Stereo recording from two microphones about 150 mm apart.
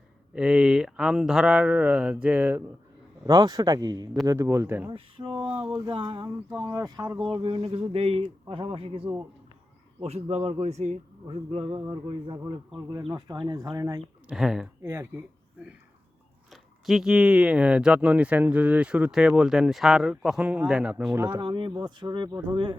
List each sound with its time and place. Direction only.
0.3 s speech: 5° right (ahead or behind)
3.2 s speech: 25° right (ahead or behind)
4.9 s a man's voice: 35° right (ahead or behind)
14.3 s speech: 5° right (ahead or behind)
14.8 s speech: 15° right (ahead or behind)
16.5 s speech: centre (ahead or behind)
21.3 s a man's voice: 30° right (ahead or behind)